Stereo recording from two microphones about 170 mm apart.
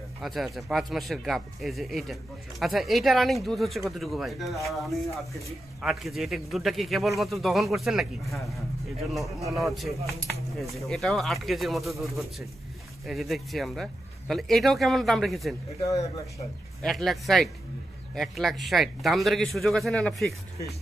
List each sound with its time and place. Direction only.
0.2 s speech: centre (ahead or behind)
15.8 s speech: 20° left (ahead or behind)
16.8 s speech: centre (ahead or behind)